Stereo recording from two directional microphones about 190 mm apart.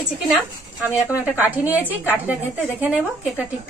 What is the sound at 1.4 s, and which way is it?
A woman's voice, 10° right (ahead or behind).